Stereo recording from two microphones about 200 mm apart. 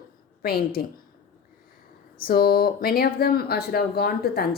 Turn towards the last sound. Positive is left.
turn(degrees=50)  # may be behind; listen again after turning